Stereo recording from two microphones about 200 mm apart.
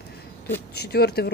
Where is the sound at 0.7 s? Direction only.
55° left (ahead or behind).